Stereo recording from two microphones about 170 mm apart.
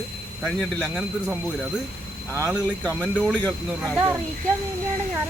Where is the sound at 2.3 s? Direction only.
15° right (ahead or behind).